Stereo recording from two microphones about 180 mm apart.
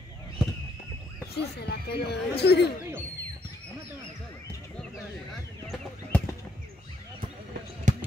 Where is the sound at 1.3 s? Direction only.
65° left (ahead or behind).